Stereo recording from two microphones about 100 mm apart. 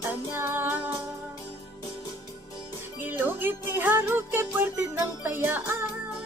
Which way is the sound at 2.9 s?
20° right (ahead or behind).